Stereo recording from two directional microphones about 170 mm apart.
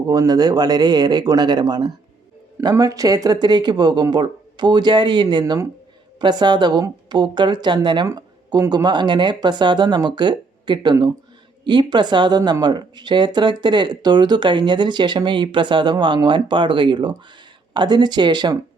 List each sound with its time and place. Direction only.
0.1 s speech: 20° right (ahead or behind)